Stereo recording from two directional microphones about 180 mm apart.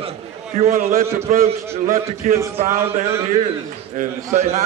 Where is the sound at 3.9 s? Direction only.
40° right (ahead or behind).